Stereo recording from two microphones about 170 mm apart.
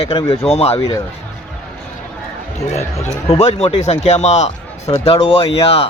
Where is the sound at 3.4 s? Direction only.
40° left (ahead or behind).